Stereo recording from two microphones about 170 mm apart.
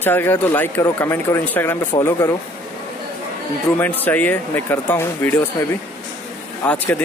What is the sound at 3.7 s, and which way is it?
Speech, 10° left (ahead or behind).